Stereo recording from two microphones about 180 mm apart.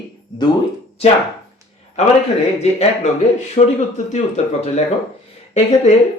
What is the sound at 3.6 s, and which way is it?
Speech, 35° left (ahead or behind).